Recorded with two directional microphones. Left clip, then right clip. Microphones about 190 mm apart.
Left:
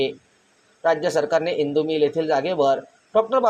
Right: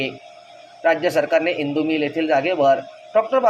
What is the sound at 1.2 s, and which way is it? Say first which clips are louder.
A man's voice: right 2 dB; centre (ahead or behind).